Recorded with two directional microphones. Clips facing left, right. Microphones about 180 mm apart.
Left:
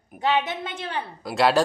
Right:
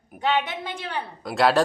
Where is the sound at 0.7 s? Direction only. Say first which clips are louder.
Right 1 dB; 25° left (ahead or behind).